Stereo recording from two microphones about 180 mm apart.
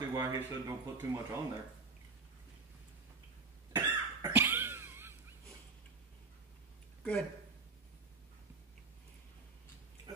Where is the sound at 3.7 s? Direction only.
15° right (ahead or behind).